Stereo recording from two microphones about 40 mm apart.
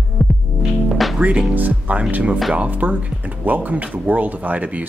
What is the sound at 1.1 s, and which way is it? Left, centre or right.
Music, right.